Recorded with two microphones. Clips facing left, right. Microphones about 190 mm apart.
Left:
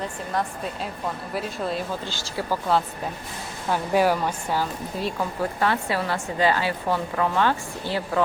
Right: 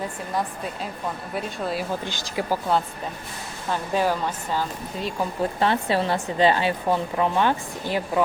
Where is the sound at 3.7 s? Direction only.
10° left (ahead or behind).